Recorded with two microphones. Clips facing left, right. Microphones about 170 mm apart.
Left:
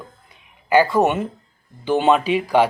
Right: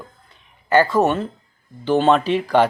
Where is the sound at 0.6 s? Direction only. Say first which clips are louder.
Even; 10° left (ahead or behind).